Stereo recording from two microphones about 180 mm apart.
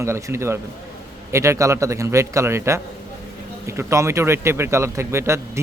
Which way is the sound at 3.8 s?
15° right (ahead or behind).